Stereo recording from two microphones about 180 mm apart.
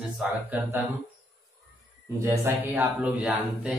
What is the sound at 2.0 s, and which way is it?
Speech, 15° right (ahead or behind).